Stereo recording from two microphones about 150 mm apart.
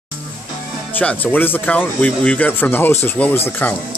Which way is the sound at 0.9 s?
10° left (ahead or behind).